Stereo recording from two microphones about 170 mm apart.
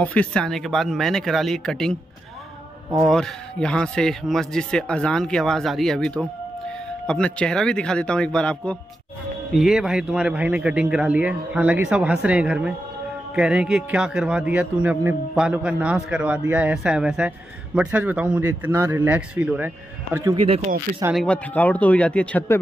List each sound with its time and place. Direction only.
0.0 s speech: 10° left (ahead or behind)
3.1 s a man's voice: centre (ahead or behind)
20.3 s speech: 35° right (ahead or behind)
21.1 s speech: 5° left (ahead or behind)